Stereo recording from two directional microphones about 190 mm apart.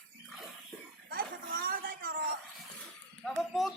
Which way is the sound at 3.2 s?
Centre (ahead or behind).